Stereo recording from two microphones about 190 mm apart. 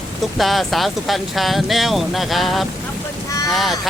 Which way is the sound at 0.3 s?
Centre (ahead or behind).